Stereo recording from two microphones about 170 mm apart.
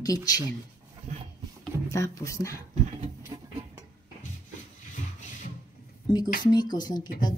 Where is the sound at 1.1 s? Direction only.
40° right (ahead or behind).